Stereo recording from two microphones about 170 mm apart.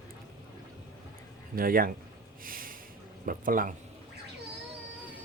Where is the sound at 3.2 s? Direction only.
55° right (ahead or behind).